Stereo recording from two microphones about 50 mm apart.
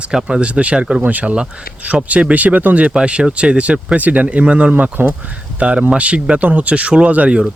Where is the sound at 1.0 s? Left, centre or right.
Right.